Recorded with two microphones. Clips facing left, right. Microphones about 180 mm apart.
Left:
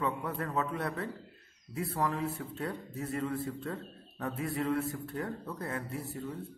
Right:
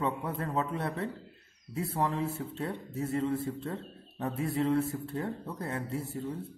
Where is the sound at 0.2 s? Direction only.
25° right (ahead or behind).